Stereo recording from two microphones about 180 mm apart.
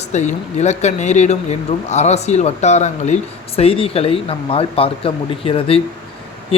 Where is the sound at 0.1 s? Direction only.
40° left (ahead or behind).